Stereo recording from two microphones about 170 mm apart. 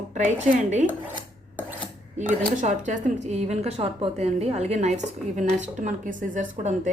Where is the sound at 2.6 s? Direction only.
45° right (ahead or behind).